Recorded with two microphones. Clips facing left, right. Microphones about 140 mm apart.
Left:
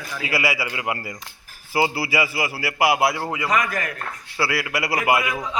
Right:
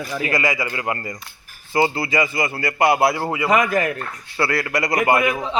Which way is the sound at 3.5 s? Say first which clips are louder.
Right 7 dB; 25° right (ahead or behind).